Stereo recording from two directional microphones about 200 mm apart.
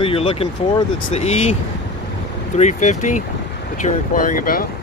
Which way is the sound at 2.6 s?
35° left (ahead or behind).